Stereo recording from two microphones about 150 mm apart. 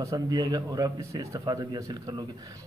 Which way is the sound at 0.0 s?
25° right (ahead or behind).